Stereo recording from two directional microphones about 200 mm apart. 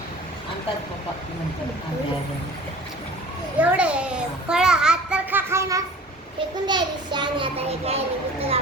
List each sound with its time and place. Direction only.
3.6 s a child's voice: 5° right (ahead or behind); by 7.9 s 30° right (ahead or behind)